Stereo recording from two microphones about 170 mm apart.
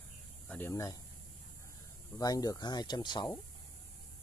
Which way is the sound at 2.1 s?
20° left (ahead or behind).